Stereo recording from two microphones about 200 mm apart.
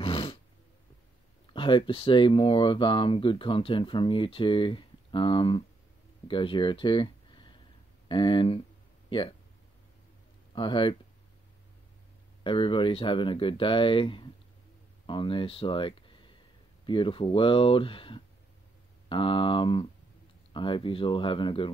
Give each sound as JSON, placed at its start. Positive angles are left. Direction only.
{"t": 0.0, "sound": "a sound", "side_deg": 25}
{"t": 1.5, "sound": "speech", "side_deg": 25}
{"t": 10.5, "sound": "speech", "side_deg": 25}
{"t": 12.4, "sound": "speech", "side_deg": 25}